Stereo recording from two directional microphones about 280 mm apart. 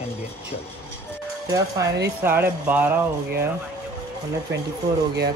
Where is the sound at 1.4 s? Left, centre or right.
Centre.